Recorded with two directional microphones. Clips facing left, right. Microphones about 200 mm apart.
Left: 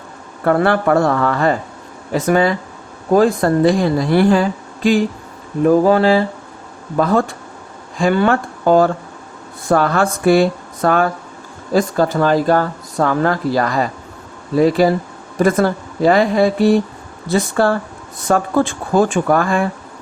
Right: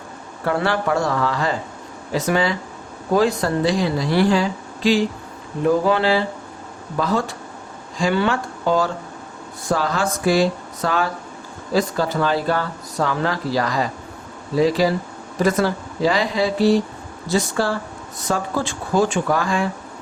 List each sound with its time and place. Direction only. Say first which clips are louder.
0.4 s speech: left 6 dB; 55° left (ahead or behind)